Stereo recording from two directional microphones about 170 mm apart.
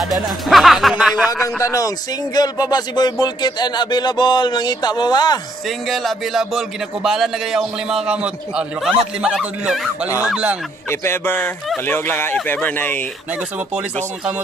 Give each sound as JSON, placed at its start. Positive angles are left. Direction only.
{"t": 0.0, "sound": "speech", "side_deg": 0}
{"t": 1.4, "sound": "speech", "side_deg": 20}
{"t": 5.9, "sound": "a man's voice", "side_deg": 0}
{"t": 10.9, "sound": "speech", "side_deg": 15}